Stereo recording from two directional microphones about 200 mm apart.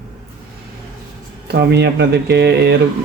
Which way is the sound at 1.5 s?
55° right (ahead or behind).